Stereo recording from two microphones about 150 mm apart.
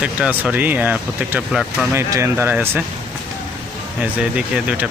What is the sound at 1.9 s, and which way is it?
Speech, 15° right (ahead or behind).